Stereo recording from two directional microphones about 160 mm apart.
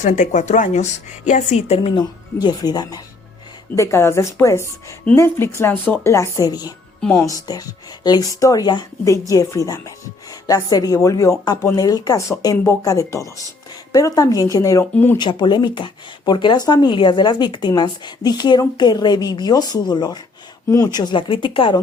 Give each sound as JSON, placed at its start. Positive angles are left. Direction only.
{"t": 0.0, "sound": "a woman's voice", "side_deg": 45}
{"t": 2.0, "sound": "speech", "side_deg": 25}
{"t": 7.0, "sound": "speech", "side_deg": 10}
{"t": 7.3, "sound": "speech", "side_deg": 25}
{"t": 15.2, "sound": "speech", "side_deg": 30}